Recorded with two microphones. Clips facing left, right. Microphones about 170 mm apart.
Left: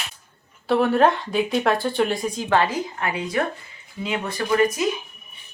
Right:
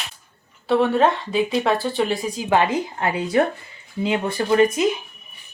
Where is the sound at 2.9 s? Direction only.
30° right (ahead or behind).